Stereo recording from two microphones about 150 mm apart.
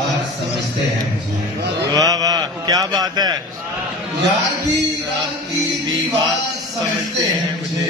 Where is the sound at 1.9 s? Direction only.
25° right (ahead or behind).